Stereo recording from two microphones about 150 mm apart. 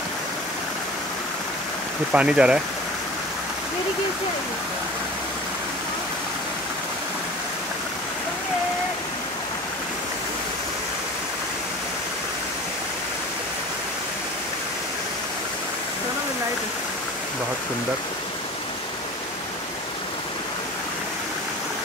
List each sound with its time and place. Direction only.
2.1 s speech: 5° right (ahead or behind)